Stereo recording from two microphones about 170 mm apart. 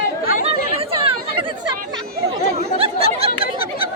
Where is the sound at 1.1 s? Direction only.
30° right (ahead or behind).